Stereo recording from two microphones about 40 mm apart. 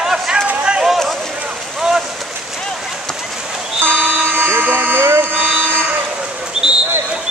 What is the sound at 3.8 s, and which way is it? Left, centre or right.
Vehicle, right.